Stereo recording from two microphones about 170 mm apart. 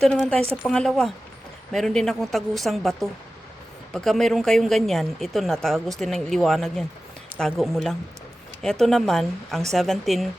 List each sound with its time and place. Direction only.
0.0 s a woman's voice: 5° left (ahead or behind)